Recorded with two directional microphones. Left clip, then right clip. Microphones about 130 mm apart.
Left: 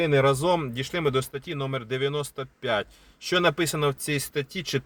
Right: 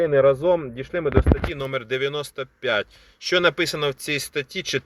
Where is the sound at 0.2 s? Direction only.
30° left (ahead or behind).